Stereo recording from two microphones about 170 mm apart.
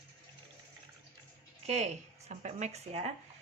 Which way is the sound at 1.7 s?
40° right (ahead or behind).